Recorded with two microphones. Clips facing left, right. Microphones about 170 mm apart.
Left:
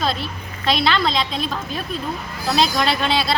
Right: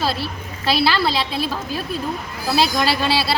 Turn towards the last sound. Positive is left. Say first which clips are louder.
# even
turn(degrees=-5)  # may be behind; listen again after turning